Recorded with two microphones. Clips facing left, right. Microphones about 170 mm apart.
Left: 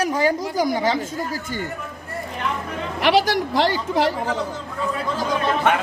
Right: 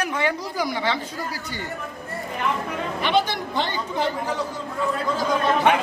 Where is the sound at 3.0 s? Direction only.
90° left.